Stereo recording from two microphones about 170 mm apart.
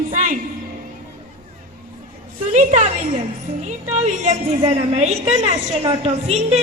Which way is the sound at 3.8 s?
40° right (ahead or behind).